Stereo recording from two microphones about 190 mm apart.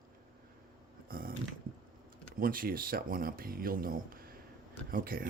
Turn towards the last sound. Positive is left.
turn(degrees=-50)  # may be behind; listen again after turning